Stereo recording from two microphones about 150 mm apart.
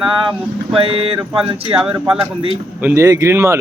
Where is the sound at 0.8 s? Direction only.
40° right (ahead or behind).